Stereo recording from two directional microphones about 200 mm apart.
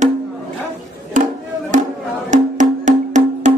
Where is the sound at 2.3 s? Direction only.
40° right (ahead or behind).